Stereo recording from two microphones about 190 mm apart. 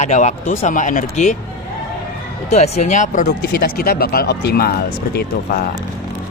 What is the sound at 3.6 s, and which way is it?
Speech, 55° left (ahead or behind).